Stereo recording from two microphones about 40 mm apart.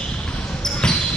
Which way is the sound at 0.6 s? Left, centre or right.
Centre.